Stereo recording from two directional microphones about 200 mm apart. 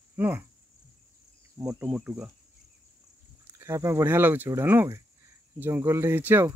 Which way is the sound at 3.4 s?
15° right (ahead or behind).